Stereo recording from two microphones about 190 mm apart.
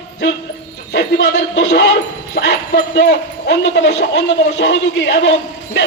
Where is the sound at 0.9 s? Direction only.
65° left (ahead or behind).